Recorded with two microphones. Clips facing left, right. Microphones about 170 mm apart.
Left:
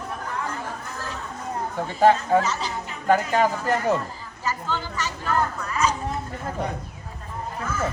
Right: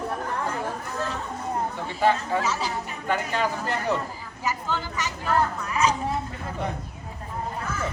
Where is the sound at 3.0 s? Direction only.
40° left (ahead or behind).